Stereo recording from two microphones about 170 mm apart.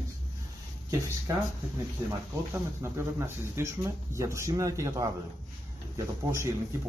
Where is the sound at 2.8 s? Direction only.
15° right (ahead or behind).